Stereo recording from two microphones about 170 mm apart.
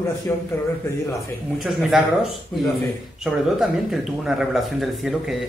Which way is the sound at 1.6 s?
Centre (ahead or behind).